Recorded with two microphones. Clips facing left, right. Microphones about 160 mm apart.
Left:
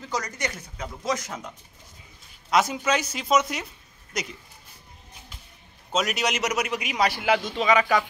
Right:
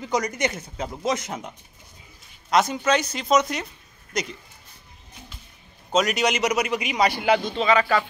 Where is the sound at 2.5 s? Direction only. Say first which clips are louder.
Right 2 dB; 5° left (ahead or behind).